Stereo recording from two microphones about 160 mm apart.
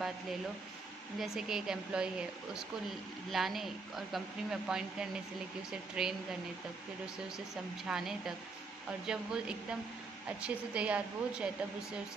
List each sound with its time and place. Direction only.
1.2 s speech: 5° right (ahead or behind)
7.3 s a woman's voice: 5° right (ahead or behind)